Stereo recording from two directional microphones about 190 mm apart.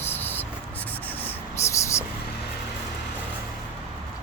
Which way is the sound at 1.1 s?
10° left (ahead or behind).